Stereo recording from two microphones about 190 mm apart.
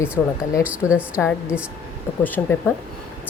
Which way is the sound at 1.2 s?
5° left (ahead or behind).